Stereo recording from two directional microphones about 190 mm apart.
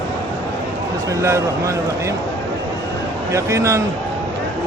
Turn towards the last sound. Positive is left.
turn(degrees=-15)  # may be behind; listen again after turning